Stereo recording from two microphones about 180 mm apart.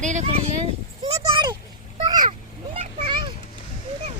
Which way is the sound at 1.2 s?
25° right (ahead or behind).